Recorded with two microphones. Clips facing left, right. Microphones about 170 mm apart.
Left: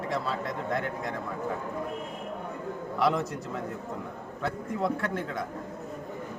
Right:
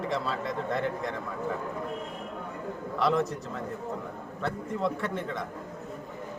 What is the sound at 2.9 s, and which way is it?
Speech, 5° left (ahead or behind).